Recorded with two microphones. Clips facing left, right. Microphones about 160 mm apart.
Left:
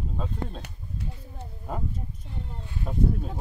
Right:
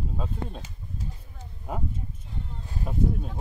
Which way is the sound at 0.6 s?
65° left (ahead or behind).